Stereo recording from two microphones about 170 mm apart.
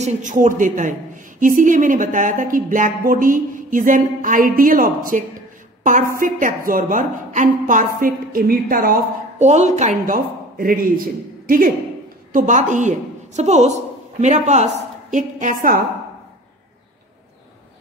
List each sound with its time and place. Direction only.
0.0 s a woman's voice: 50° right (ahead or behind)
9.4 s a woman's voice: 40° right (ahead or behind)